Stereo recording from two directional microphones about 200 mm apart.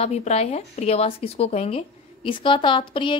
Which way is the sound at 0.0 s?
30° left (ahead or behind).